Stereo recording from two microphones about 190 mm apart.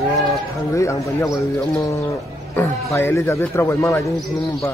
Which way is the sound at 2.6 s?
10° left (ahead or behind).